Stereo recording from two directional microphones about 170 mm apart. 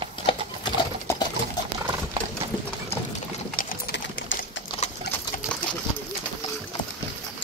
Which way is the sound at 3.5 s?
55° left (ahead or behind).